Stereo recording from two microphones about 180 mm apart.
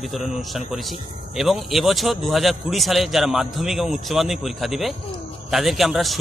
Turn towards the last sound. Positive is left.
turn(degrees=0)  # may be behind; listen again after turning